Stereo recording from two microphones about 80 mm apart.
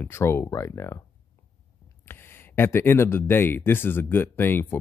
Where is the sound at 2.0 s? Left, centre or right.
Left.